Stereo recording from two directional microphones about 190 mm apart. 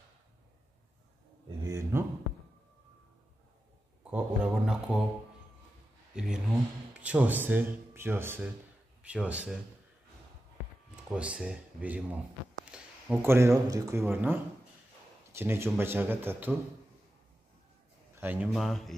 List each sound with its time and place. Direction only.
1.6 s a sound: 15° right (ahead or behind)
4.0 s speech: 5° right (ahead or behind)
6.1 s speech: 5° right (ahead or behind)
11.1 s speech: 5° right (ahead or behind)
18.1 s speech: 10° right (ahead or behind)